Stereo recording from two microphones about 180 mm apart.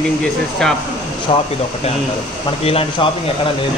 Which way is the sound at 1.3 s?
30° left (ahead or behind).